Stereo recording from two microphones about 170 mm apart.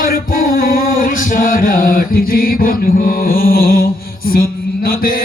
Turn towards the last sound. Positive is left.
turn(degrees=60)  # may be behind; listen again after turning